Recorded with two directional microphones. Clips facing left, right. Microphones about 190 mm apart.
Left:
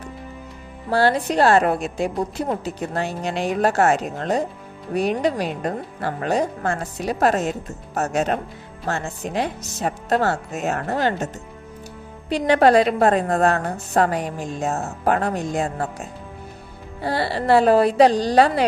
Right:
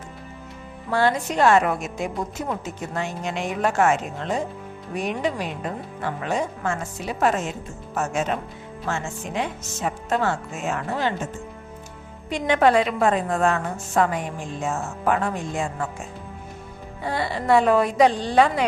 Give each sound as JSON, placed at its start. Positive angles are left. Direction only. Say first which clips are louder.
{"t": 0.9, "sound": "a woman's voice", "louder": "left 3 dB", "side_deg": 35}
{"t": 12.3, "sound": "a woman's voice", "louder": "left 3 dB", "side_deg": 35}